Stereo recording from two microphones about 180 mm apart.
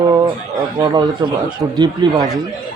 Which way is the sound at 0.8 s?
25° right (ahead or behind).